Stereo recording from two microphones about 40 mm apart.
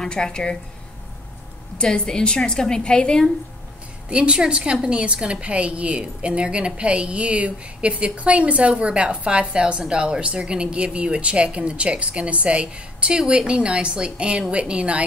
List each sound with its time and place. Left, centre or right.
0.0 s a woman's voice: centre
1.8 s a woman's voice: centre
4.1 s a woman's voice: right